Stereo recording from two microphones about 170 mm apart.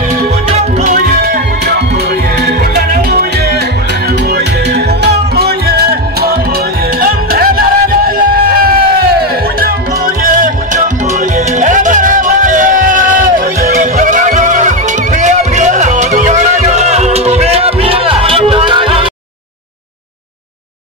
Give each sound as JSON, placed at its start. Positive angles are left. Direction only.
{"t": 0.5, "sound": "music", "side_deg": -40}
{"t": 1.2, "sound": "music", "side_deg": -70}
{"t": 4.1, "sound": "music", "side_deg": -80}